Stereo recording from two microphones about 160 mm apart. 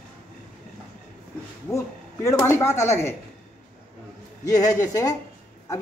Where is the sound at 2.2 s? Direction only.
20° left (ahead or behind).